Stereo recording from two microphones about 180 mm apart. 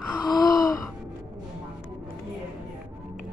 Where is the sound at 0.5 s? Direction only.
20° left (ahead or behind).